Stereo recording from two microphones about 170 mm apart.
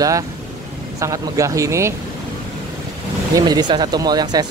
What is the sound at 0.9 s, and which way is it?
Speech, 20° right (ahead or behind).